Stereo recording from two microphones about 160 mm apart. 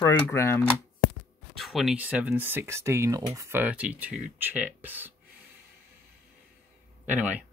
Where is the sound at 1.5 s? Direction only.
Centre (ahead or behind).